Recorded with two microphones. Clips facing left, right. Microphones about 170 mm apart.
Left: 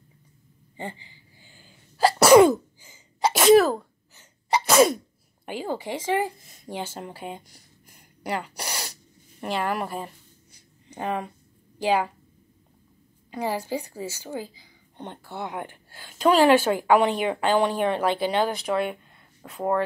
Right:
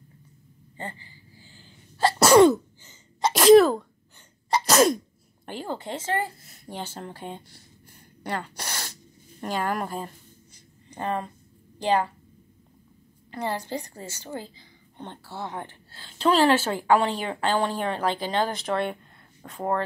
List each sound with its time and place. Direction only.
0.7 s a woman's voice: 15° left (ahead or behind)
2.2 s sneeze: 5° left (ahead or behind)
9.4 s a sound: 10° left (ahead or behind)
11.8 s a woman's voice: 10° left (ahead or behind)
13.3 s a woman's voice: 10° left (ahead or behind)